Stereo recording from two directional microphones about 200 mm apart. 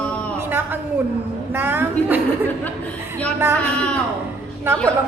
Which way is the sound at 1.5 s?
10° right (ahead or behind).